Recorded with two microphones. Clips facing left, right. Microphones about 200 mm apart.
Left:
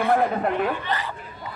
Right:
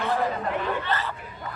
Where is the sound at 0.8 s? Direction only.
15° left (ahead or behind).